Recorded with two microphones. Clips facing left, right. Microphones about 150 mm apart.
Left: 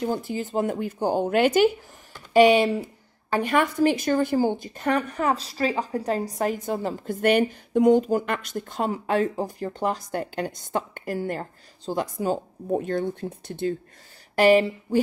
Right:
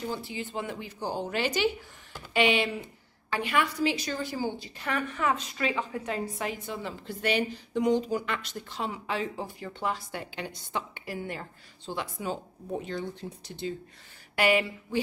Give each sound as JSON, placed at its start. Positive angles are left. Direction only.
{"t": 0.0, "sound": "a woman's voice", "side_deg": 45}
{"t": 2.3, "sound": "a woman's voice", "side_deg": 40}
{"t": 14.3, "sound": "speech", "side_deg": 35}